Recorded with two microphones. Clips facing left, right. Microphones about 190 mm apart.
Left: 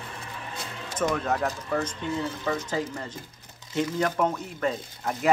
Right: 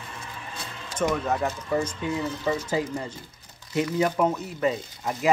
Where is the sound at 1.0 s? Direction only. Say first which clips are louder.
Right 1 dB; centre (ahead or behind).